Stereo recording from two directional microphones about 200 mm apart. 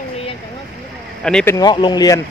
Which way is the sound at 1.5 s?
20° left (ahead or behind).